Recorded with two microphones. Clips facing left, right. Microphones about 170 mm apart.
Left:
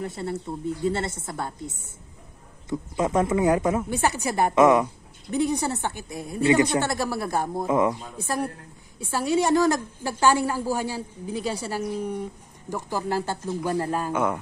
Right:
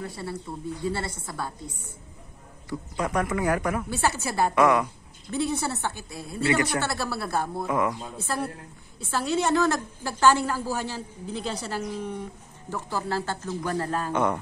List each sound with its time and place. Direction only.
0.0 s a woman's voice: 25° left (ahead or behind); by 14.4 s 5° left (ahead or behind)